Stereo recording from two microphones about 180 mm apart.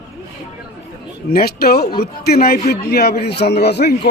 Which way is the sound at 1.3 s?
60° left (ahead or behind).